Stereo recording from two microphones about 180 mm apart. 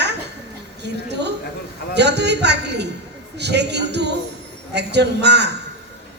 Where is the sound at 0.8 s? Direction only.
70° right (ahead or behind).